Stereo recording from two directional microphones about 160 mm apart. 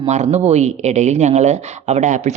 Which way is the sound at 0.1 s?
45° right (ahead or behind).